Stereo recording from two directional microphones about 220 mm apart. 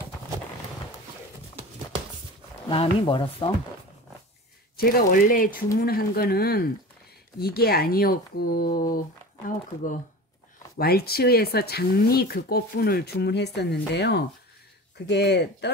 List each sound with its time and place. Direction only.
2.7 s speech: 25° left (ahead or behind)
4.7 s speech: 45° left (ahead or behind)
10.8 s speech: 45° left (ahead or behind)